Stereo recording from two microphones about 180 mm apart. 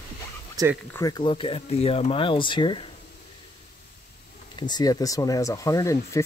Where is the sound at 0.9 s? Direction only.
20° left (ahead or behind).